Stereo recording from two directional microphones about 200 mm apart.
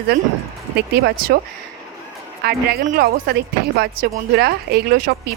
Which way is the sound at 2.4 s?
50° right (ahead or behind).